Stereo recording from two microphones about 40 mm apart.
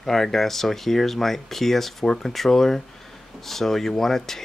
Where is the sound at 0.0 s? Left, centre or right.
Centre.